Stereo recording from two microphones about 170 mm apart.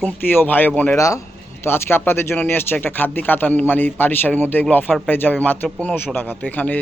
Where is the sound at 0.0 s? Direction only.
10° left (ahead or behind).